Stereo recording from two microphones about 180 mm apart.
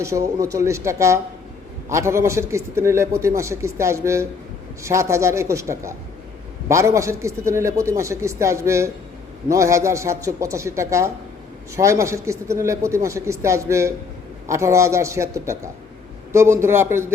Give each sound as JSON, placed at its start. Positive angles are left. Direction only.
{"t": 0.0, "sound": "a man's voice", "side_deg": -15}